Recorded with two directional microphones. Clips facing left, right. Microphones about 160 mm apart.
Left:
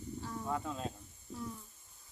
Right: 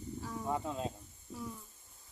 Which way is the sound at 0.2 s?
10° right (ahead or behind).